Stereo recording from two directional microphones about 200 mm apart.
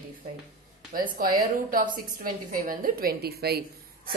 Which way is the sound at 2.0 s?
45° right (ahead or behind).